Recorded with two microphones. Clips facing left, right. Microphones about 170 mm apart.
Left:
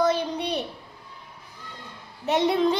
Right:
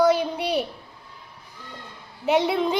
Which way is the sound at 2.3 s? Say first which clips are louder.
Even; 10° right (ahead or behind).